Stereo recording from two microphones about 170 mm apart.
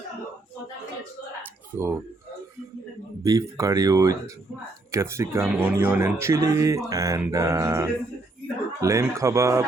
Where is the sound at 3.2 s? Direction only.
20° right (ahead or behind).